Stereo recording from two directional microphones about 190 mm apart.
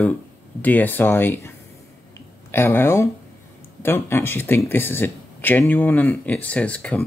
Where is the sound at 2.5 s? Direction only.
10° left (ahead or behind).